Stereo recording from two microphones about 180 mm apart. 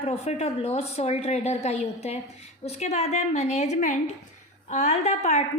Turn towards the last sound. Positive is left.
turn(degrees=40)  # may be behind; listen again after turning